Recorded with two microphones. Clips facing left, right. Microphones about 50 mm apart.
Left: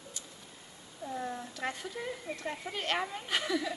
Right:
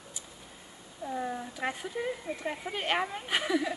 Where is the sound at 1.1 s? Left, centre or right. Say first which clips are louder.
Right 3 dB; centre.